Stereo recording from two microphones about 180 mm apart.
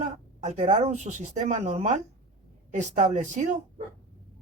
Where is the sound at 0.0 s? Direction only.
40° right (ahead or behind).